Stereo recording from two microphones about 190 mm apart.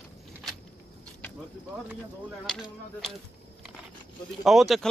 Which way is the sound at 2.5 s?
5° left (ahead or behind).